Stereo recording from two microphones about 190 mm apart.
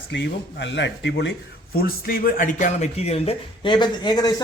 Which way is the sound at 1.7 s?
50° left (ahead or behind).